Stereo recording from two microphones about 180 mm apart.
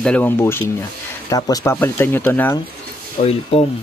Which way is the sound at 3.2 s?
35° left (ahead or behind).